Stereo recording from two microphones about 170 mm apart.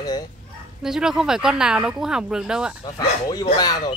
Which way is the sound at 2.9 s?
25° left (ahead or behind).